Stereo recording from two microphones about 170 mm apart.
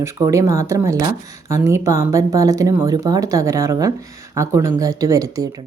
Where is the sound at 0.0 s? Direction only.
15° right (ahead or behind).